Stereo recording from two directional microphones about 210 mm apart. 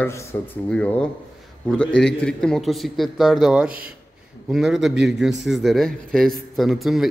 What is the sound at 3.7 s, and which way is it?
Speech, 45° right (ahead or behind).